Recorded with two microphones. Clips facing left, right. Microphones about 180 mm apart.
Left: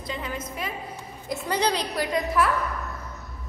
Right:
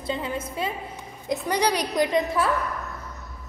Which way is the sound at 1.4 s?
15° right (ahead or behind).